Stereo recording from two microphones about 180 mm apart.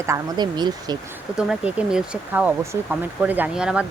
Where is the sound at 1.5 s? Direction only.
5° right (ahead or behind).